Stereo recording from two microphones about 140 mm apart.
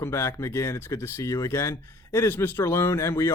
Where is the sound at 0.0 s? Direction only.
20° left (ahead or behind).